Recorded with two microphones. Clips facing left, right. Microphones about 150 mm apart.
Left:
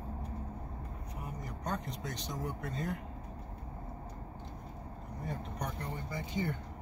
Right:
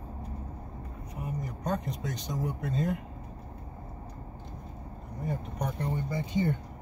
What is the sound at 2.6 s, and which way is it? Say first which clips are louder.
Speech: right 7 dB; 25° right (ahead or behind).